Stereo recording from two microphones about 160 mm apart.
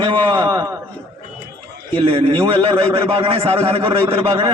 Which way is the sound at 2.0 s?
35° right (ahead or behind).